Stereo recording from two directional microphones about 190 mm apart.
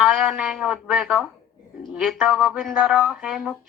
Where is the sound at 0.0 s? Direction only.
5° right (ahead or behind).